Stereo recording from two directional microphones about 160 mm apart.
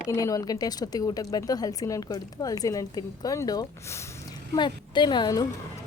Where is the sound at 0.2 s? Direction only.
20° left (ahead or behind).